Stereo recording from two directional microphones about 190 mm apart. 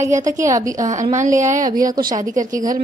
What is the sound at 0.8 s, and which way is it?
Speech, 40° right (ahead or behind).